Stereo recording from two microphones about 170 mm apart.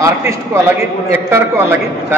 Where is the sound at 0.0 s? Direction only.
20° right (ahead or behind).